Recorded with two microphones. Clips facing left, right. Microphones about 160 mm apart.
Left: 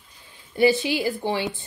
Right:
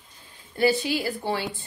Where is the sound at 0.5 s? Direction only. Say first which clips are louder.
Left 3 dB; 20° left (ahead or behind).